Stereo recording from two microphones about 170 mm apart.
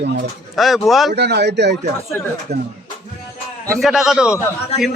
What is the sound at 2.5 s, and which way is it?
Speech, 75° right (ahead or behind).